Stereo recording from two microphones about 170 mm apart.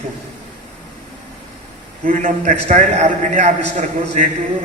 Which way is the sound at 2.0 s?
45° right (ahead or behind).